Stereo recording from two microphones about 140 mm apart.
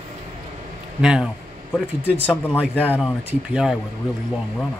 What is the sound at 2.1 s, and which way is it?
Speech, 15° left (ahead or behind).